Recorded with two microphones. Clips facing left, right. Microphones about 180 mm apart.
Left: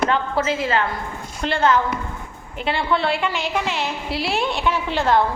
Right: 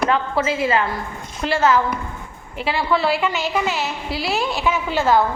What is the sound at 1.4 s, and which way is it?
A woman's voice, 5° right (ahead or behind).